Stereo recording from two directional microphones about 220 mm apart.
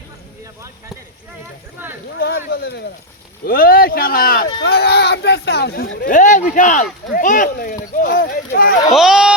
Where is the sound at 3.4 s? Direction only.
40° left (ahead or behind).